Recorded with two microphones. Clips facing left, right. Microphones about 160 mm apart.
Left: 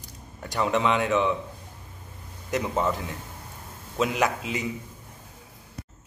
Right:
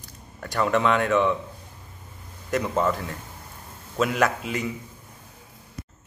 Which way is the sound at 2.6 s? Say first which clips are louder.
Right 2 dB; 15° left (ahead or behind).